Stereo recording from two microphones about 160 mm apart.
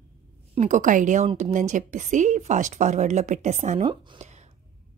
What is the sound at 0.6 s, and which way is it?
A woman's voice, 50° right (ahead or behind).